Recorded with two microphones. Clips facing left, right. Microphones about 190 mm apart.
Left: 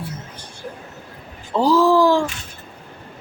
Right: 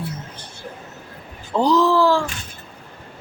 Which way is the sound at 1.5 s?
5° left (ahead or behind).